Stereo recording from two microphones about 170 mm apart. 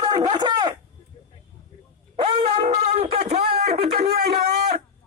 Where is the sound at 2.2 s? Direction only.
35° right (ahead or behind).